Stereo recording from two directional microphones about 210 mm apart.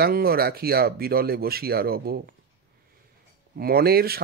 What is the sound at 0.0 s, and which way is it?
Speech, 45° right (ahead or behind).